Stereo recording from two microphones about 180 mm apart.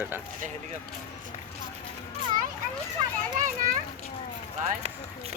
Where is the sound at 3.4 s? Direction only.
50° right (ahead or behind).